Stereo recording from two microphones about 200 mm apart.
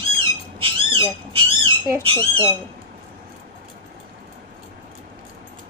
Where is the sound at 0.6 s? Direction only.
25° right (ahead or behind).